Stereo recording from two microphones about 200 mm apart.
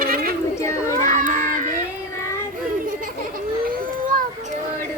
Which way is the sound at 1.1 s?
40° right (ahead or behind).